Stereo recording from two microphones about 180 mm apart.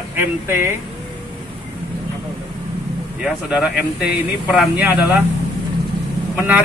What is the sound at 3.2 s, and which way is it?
Speech, 5° right (ahead or behind).